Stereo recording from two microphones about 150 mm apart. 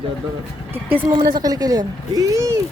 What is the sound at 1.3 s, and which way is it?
Speech, 25° right (ahead or behind).